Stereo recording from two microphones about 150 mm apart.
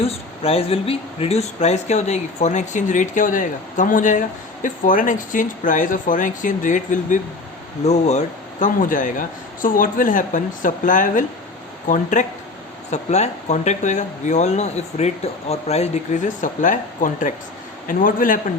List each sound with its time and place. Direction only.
0.0 s speech: 40° left (ahead or behind); by 18.3 s 65° left (ahead or behind)